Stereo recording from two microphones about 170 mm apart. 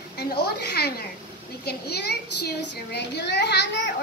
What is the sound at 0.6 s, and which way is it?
A child's voice, 70° left (ahead or behind).